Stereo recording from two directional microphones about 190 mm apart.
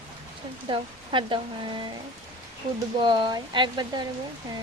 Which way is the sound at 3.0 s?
25° right (ahead or behind).